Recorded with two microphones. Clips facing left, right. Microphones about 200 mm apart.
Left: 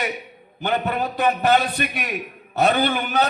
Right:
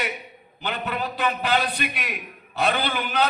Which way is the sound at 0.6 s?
45° left (ahead or behind).